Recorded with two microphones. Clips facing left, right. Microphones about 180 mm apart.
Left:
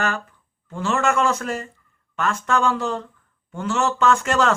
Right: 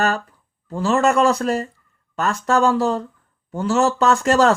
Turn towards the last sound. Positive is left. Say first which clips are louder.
# right 3 dB
turn(degrees=-35)  # may be behind; listen again after turning